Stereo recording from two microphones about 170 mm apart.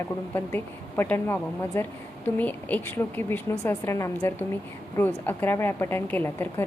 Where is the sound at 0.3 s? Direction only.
10° left (ahead or behind).